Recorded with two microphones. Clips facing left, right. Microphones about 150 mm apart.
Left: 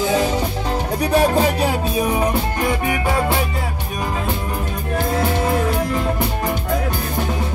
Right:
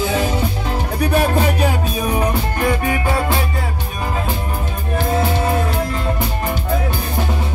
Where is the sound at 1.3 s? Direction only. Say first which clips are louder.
Even; 30° left (ahead or behind).